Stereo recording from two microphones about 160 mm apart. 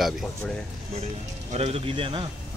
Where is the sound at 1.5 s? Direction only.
40° right (ahead or behind).